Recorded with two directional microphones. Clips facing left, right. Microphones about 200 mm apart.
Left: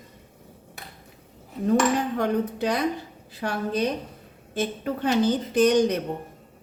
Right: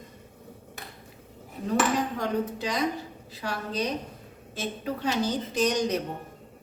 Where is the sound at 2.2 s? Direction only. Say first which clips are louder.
Left 4 dB; 60° left (ahead or behind).